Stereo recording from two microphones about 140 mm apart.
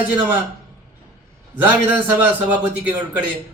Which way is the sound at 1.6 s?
15° right (ahead or behind).